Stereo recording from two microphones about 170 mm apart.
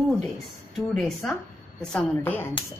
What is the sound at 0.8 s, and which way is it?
A woman's voice, centre (ahead or behind).